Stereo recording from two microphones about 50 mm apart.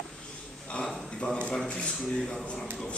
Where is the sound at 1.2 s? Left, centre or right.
Centre.